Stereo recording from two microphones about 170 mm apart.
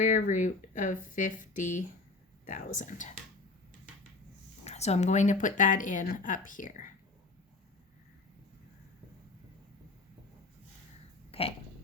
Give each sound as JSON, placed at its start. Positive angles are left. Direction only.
{"t": 0.0, "sound": "speech", "side_deg": 45}
{"t": 4.6, "sound": "speech", "side_deg": 40}
{"t": 11.3, "sound": "a sound", "side_deg": 35}